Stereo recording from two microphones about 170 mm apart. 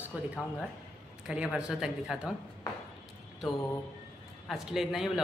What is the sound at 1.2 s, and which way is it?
Speech, 5° right (ahead or behind).